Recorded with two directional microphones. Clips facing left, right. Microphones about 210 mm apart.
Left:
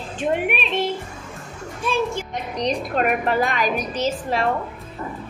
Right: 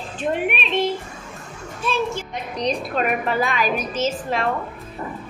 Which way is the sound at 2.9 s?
45° left (ahead or behind).